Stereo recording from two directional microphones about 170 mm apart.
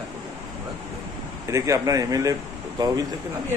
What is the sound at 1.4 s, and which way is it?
Speech, 20° right (ahead or behind).